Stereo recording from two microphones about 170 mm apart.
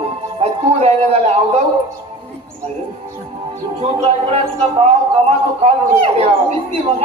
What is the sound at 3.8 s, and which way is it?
A man's voice, 35° right (ahead or behind).